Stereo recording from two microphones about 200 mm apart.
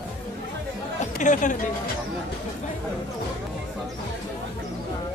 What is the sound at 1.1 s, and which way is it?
Speech, 40° left (ahead or behind).